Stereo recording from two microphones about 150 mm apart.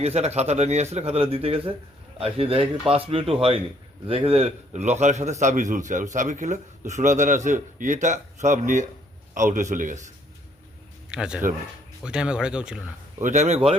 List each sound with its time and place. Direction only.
0.0 s a man's voice: 45° right (ahead or behind)
11.1 s speech: 5° right (ahead or behind)
13.2 s a man's voice: 50° right (ahead or behind)